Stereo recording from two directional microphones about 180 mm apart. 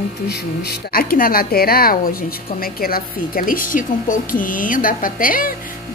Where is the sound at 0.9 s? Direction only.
55° left (ahead or behind).